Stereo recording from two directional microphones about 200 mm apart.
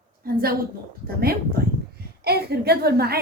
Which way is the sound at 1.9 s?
50° right (ahead or behind).